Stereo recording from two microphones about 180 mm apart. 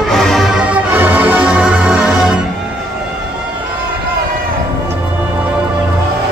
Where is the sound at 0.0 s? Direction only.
Centre (ahead or behind).